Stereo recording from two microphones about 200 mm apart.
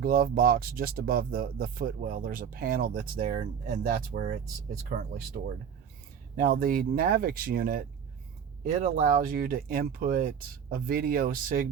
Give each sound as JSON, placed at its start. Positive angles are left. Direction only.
{"t": 0.0, "sound": "speech", "side_deg": -45}